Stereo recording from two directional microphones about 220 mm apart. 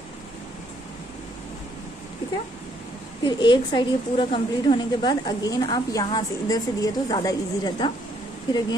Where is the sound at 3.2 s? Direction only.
20° left (ahead or behind).